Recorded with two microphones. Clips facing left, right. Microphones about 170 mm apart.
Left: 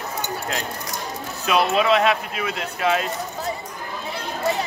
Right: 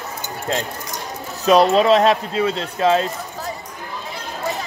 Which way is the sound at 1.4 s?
35° right (ahead or behind).